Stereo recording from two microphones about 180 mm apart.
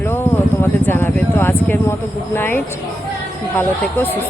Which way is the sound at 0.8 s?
10° left (ahead or behind).